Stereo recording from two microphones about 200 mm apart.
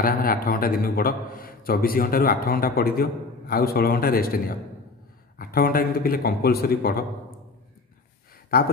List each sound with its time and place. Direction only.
0.0 s a man's voice: 45° left (ahead or behind)
8.5 s a man's voice: 50° left (ahead or behind)